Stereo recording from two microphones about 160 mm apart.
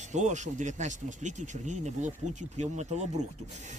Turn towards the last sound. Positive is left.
turn(degrees=-45)  # may be behind; listen again after turning